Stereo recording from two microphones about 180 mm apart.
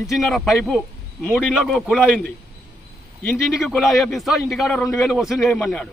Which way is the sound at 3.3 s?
Centre (ahead or behind).